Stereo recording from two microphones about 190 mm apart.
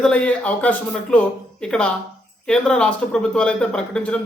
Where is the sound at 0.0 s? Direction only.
5° left (ahead or behind).